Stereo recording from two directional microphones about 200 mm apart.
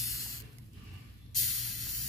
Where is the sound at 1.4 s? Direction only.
Centre (ahead or behind).